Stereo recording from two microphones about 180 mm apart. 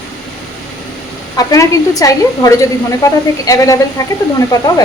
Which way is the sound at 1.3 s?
20° left (ahead or behind).